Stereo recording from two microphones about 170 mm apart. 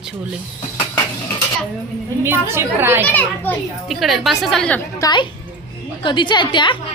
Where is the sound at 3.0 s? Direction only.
10° left (ahead or behind).